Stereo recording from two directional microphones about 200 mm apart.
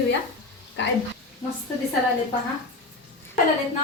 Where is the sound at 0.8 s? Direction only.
65° left (ahead or behind).